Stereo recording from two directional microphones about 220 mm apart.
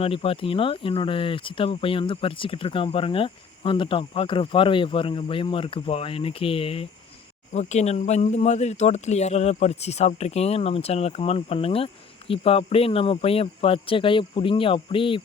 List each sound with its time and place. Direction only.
0.0 s speech: 25° left (ahead or behind)